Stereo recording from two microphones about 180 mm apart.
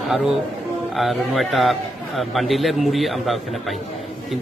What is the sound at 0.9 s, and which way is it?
A man's voice, centre (ahead or behind).